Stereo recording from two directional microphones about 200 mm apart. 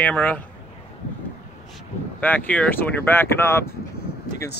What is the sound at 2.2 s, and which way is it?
Speech, 10° left (ahead or behind).